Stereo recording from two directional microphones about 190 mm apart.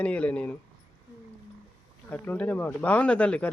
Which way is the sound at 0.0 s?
5° left (ahead or behind).